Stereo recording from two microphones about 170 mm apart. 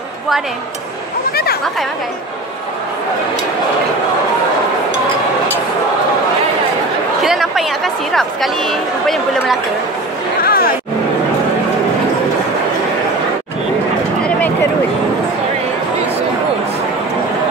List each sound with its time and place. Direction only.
1.3 s a sound: 65° left (ahead or behind)
7.2 s a woman's voice: centre (ahead or behind)
10.4 s hubbub: 60° left (ahead or behind)